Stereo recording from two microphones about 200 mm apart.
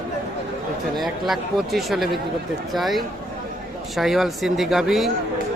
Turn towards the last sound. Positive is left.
turn(degrees=0)  # may be behind; listen again after turning